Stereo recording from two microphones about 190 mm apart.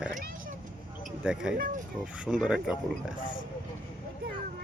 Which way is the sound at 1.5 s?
50° right (ahead or behind).